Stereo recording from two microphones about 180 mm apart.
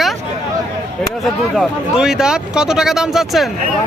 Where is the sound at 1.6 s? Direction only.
5° right (ahead or behind).